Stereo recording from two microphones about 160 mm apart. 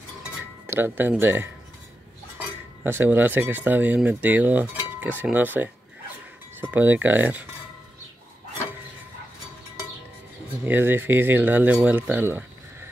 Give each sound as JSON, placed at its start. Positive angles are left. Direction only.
{"t": 0.7, "sound": "speech", "side_deg": -15}
{"t": 10.6, "sound": "speech", "side_deg": -15}